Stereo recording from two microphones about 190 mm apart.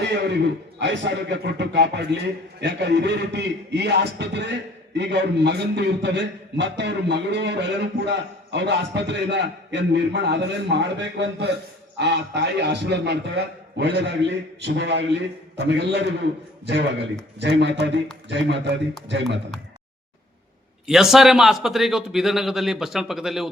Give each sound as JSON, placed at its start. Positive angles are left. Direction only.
{"t": 0.0, "sound": "a man's voice", "side_deg": -65}
{"t": 20.8, "sound": "a man's voice", "side_deg": 0}